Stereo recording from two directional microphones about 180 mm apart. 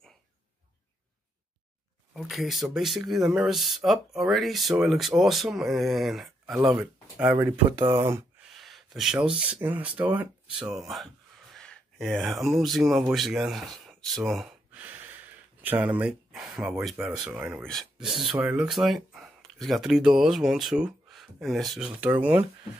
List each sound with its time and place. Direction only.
2.1 s speech: centre (ahead or behind)
7.8 s speech: 30° right (ahead or behind)
8.4 s a sound: centre (ahead or behind)
9.5 s speech: 10° right (ahead or behind)